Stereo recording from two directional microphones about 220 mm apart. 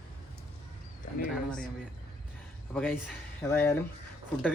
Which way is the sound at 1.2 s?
5° left (ahead or behind).